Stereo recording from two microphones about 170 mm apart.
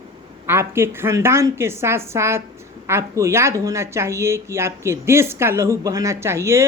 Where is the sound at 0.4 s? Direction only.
15° right (ahead or behind).